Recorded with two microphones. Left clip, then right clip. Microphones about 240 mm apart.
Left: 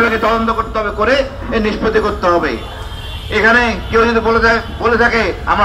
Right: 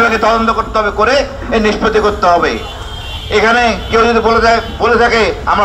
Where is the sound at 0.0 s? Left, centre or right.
Right.